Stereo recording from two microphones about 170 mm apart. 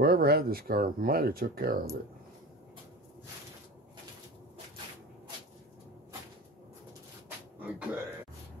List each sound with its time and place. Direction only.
0.0 s speech: 65° right (ahead or behind)
7.6 s speech: 10° right (ahead or behind)